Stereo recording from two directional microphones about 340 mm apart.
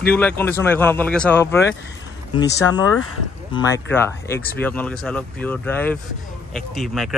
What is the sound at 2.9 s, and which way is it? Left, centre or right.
Speech, left.